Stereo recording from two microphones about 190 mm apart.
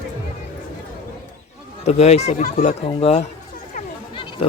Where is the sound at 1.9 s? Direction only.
35° left (ahead or behind).